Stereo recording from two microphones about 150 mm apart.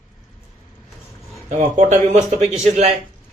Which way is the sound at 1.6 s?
50° right (ahead or behind).